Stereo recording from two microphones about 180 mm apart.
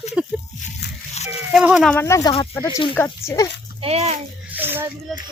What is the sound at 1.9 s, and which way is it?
Speech, 15° left (ahead or behind).